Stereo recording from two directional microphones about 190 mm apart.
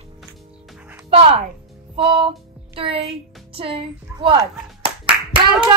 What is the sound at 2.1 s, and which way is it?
Music, 25° right (ahead or behind).